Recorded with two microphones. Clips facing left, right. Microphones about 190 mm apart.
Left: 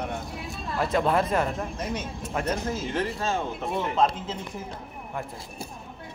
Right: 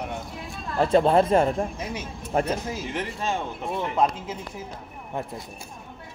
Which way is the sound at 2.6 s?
15° right (ahead or behind).